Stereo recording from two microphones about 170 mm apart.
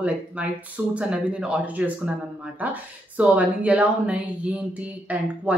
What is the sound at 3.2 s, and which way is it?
Speech, 10° right (ahead or behind).